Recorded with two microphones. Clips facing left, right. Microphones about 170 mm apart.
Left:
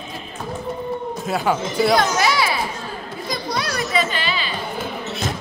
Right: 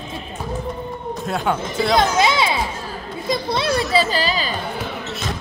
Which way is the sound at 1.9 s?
20° right (ahead or behind).